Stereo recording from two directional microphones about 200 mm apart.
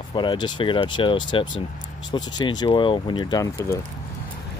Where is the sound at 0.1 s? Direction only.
25° left (ahead or behind).